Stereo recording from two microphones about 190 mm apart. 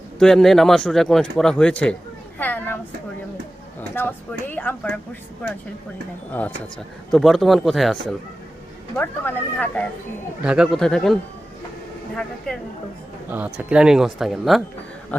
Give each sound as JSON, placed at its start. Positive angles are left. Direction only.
{"t": 0.2, "sound": "speech", "side_deg": 0}
{"t": 2.4, "sound": "a sound", "side_deg": 10}
{"t": 3.8, "sound": "speech", "side_deg": 10}
{"t": 7.1, "sound": "speech", "side_deg": 0}
{"t": 10.4, "sound": "speech", "side_deg": -5}
{"t": 12.5, "sound": "speech", "side_deg": 5}
{"t": 13.3, "sound": "speech", "side_deg": -10}